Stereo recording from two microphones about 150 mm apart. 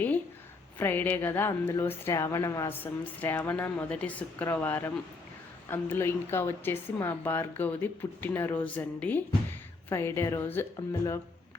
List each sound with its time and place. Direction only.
0.8 s speech: 15° left (ahead or behind)